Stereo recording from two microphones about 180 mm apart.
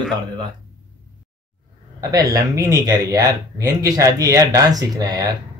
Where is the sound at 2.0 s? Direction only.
20° right (ahead or behind).